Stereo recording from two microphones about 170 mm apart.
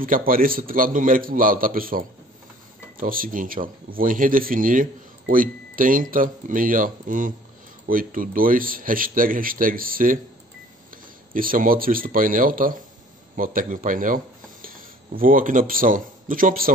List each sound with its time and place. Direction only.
0.0 s speech: 55° right (ahead or behind)
11.3 s speech: 55° right (ahead or behind)